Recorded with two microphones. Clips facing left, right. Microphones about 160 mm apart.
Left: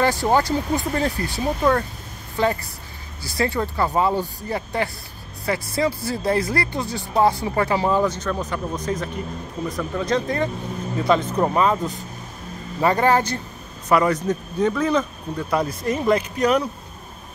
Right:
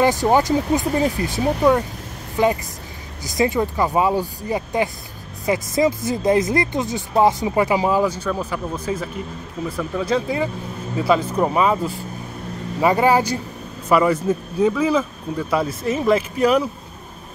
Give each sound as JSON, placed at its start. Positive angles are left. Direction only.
{"t": 0.0, "sound": "speech", "side_deg": -15}